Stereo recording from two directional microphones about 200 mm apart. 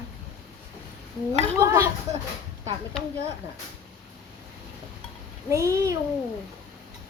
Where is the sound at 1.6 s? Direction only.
15° right (ahead or behind).